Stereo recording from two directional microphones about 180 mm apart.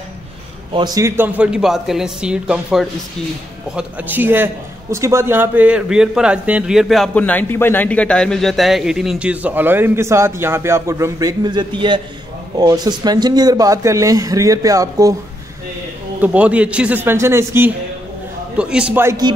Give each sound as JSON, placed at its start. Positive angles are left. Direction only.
{"t": 0.7, "sound": "a man's voice", "side_deg": -20}
{"t": 16.2, "sound": "a man's voice", "side_deg": -5}